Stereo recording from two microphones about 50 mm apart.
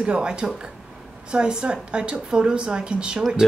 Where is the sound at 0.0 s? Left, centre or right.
Centre.